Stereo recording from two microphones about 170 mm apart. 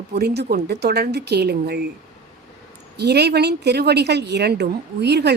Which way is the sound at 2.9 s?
75° right (ahead or behind).